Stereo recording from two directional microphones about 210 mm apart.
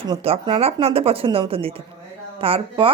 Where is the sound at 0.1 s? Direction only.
25° right (ahead or behind).